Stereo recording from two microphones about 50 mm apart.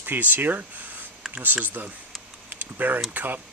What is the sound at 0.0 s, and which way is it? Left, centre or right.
Speech, right.